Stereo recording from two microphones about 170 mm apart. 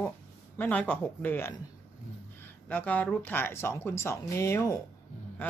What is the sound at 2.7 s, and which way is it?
Speech, 10° left (ahead or behind).